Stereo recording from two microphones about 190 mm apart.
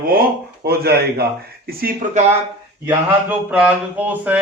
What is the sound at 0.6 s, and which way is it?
Speech, 55° right (ahead or behind).